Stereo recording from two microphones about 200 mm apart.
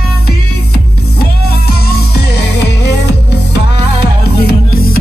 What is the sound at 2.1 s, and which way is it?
Music, 55° left (ahead or behind).